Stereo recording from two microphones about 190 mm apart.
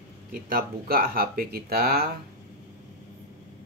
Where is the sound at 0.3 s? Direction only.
50° right (ahead or behind).